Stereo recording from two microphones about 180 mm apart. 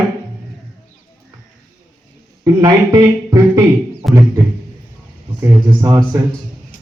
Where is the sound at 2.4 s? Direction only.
20° right (ahead or behind).